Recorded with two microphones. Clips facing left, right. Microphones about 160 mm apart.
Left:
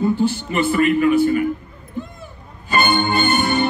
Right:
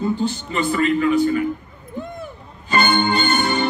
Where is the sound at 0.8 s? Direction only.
15° left (ahead or behind).